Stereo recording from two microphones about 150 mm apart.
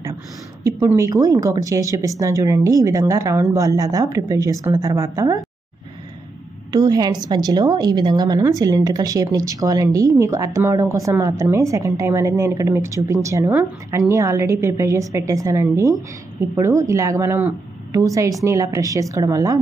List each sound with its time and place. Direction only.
0.7 s a woman's voice: 20° right (ahead or behind)
6.7 s a woman's voice: 25° right (ahead or behind)